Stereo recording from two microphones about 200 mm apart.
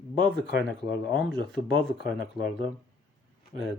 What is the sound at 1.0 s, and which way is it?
Speech, 5° left (ahead or behind).